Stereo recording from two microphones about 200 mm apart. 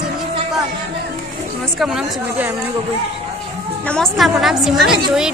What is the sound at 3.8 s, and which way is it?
Speech, 5° left (ahead or behind).